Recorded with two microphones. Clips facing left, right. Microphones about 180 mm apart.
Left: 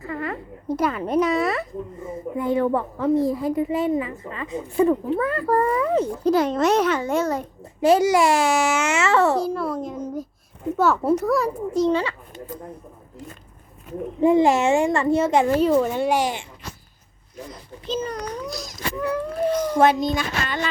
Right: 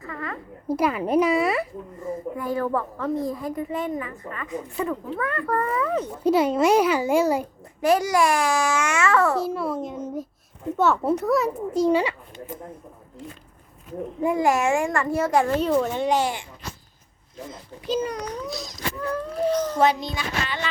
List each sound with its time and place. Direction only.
0.0 s a sound: 30° left (ahead or behind)
0.7 s a child's voice: 5° right (ahead or behind)
2.3 s a child's voice: 20° left (ahead or behind)
6.2 s a child's voice: 5° right (ahead or behind)
7.6 s a child's voice: 25° left (ahead or behind)
9.4 s a child's voice: 5° right (ahead or behind)
11.9 s a child's voice: 15° right (ahead or behind)
14.2 s a child's voice: 25° left (ahead or behind)
15.5 s a child's voice: 5° left (ahead or behind)
17.8 s a child's voice: 10° right (ahead or behind)
19.1 s a child's voice: 10° left (ahead or behind)
19.8 s speech: 45° left (ahead or behind)